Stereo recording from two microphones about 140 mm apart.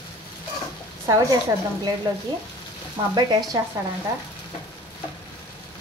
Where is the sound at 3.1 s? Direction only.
30° right (ahead or behind).